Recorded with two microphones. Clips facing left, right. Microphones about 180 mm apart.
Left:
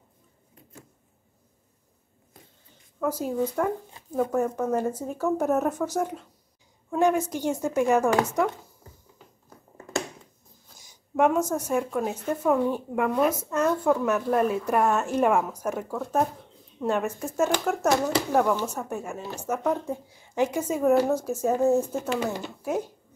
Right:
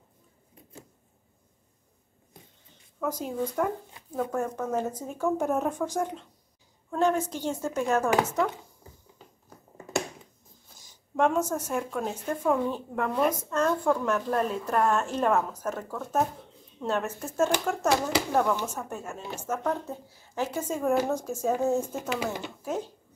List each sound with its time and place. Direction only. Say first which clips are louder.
3.0 s a woman's voice: left 4 dB; 5° left (ahead or behind)
8.8 s a sound: even; 10° right (ahead or behind)
10.8 s a woman's voice: left 3 dB; 10° left (ahead or behind)
16.0 s speech: left 2 dB; centre (ahead or behind)
16.8 s a woman's voice: left 3 dB; 10° left (ahead or behind)
22.1 s speech: left 3 dB; 10° right (ahead or behind)
22.6 s a woman's voice: left 5 dB; 10° left (ahead or behind)